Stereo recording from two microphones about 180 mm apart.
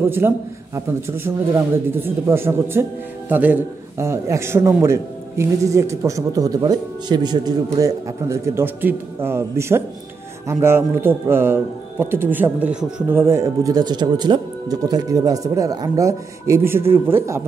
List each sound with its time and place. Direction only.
0.2 s speech: 15° right (ahead or behind)